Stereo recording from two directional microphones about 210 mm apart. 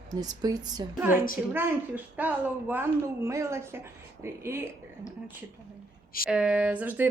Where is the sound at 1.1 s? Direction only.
40° left (ahead or behind).